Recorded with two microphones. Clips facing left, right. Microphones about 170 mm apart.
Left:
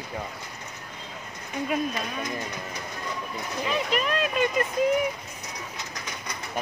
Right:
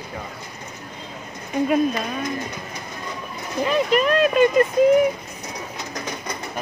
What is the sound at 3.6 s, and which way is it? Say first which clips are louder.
Speech: right 8 dB; 50° right (ahead or behind).